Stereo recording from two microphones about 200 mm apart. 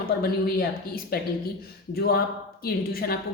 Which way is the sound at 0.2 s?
50° left (ahead or behind).